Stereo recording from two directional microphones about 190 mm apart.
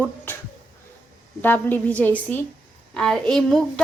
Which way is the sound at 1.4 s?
10° left (ahead or behind).